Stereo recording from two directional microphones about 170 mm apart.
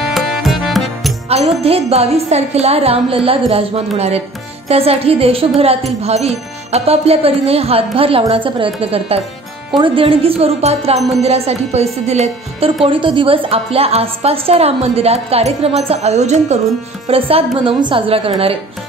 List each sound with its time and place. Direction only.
0.1 s music: centre (ahead or behind)
1.3 s a woman's voice: 35° right (ahead or behind)